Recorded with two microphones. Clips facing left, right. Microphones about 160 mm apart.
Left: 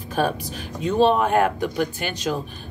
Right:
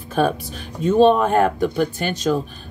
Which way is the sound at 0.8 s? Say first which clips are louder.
Right 4 dB; 40° right (ahead or behind).